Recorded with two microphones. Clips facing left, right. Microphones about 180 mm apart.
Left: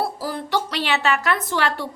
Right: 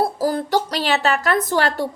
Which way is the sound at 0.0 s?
45° right (ahead or behind).